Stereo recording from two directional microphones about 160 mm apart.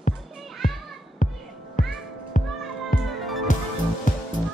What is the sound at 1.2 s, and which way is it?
Music, 55° left (ahead or behind).